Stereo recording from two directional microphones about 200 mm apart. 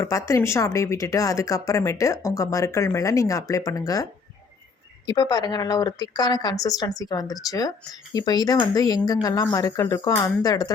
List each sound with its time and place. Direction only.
0.0 s speech: 15° left (ahead or behind)